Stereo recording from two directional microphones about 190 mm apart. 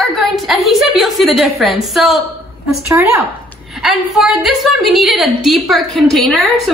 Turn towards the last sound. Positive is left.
turn(degrees=0)  # may be behind; listen again after turning